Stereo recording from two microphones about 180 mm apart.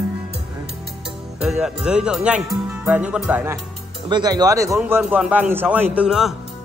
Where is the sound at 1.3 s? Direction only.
5° right (ahead or behind).